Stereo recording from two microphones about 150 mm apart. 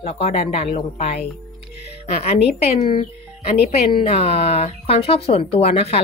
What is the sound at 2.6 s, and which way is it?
Speech, 45° left (ahead or behind).